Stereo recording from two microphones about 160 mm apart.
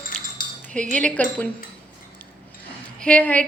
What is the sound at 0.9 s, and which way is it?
Speech, 5° left (ahead or behind).